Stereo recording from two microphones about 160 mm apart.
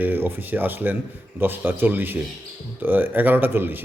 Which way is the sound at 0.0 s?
10° right (ahead or behind).